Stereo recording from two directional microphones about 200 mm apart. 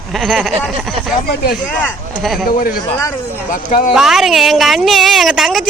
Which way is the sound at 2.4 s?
45° left (ahead or behind).